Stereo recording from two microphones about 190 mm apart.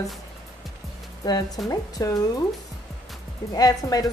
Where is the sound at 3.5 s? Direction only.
20° left (ahead or behind).